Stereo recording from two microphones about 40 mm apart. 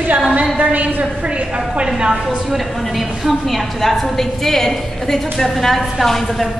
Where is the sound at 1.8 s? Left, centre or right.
Centre.